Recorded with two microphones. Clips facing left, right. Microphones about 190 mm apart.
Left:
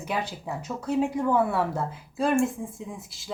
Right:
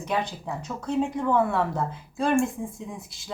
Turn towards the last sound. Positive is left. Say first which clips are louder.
# right 1 dB
turn(degrees=0)  # may be behind; listen again after turning